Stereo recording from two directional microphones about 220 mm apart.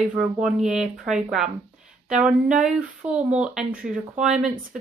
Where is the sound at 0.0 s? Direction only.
5° right (ahead or behind).